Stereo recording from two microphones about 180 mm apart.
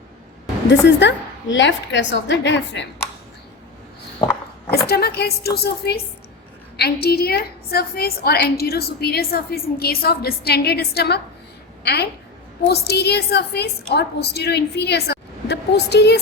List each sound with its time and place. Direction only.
0.7 s a woman's voice: 75° left (ahead or behind)
4.9 s a woman's voice: 60° left (ahead or behind)